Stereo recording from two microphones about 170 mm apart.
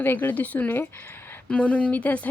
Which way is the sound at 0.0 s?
10° left (ahead or behind).